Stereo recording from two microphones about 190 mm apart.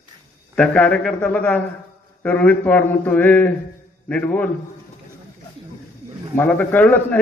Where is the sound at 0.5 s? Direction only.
5° left (ahead or behind).